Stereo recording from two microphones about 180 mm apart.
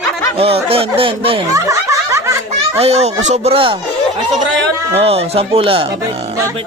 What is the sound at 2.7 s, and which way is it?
Speech, 35° right (ahead or behind).